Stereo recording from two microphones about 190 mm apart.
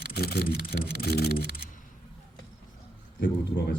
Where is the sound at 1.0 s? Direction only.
55° left (ahead or behind).